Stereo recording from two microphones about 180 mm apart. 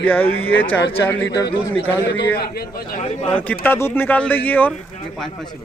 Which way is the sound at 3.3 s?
10° left (ahead or behind).